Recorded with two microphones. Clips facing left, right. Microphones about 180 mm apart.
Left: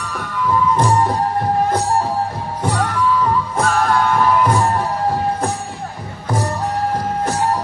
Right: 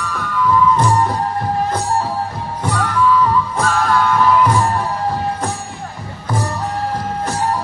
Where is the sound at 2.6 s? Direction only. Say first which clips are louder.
Right 1 dB; 30° left (ahead or behind).